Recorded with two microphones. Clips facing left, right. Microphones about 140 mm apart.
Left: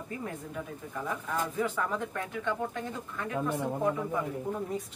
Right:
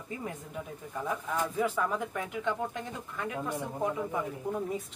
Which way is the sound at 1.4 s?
10° right (ahead or behind).